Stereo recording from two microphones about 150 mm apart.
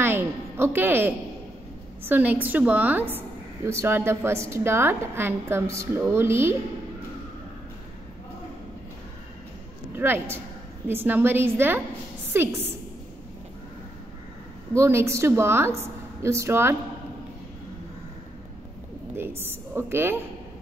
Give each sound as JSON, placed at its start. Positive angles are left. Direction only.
{"t": 0.0, "sound": "a woman's voice", "side_deg": -15}
{"t": 9.9, "sound": "a woman's voice", "side_deg": -15}
{"t": 14.8, "sound": "a woman's voice", "side_deg": -15}
{"t": 19.1, "sound": "a woman's voice", "side_deg": -15}